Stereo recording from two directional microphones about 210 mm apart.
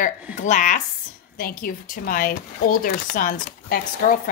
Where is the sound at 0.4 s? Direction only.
35° left (ahead or behind).